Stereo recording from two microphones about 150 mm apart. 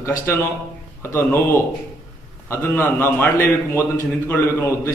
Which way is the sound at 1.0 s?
15° left (ahead or behind).